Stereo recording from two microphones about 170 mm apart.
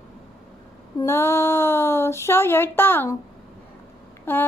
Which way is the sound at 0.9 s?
15° left (ahead or behind).